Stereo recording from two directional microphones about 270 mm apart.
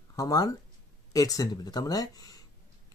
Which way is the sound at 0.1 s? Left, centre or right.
Centre.